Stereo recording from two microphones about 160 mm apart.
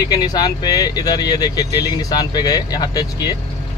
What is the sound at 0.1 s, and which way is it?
Speech, 25° left (ahead or behind).